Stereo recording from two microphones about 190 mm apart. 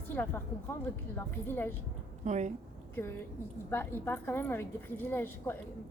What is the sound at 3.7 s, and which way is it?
A woman's voice, 10° left (ahead or behind).